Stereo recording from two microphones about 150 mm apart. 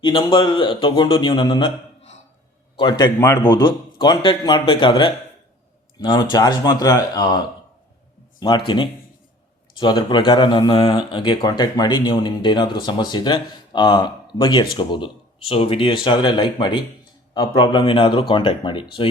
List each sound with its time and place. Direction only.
0.0 s speech: 30° left (ahead or behind)
2.7 s speech: 30° left (ahead or behind)